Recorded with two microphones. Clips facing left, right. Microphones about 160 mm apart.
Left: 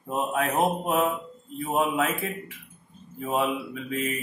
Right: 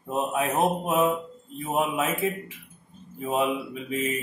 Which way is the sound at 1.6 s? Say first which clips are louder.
Left 1 dB; 20° right (ahead or behind).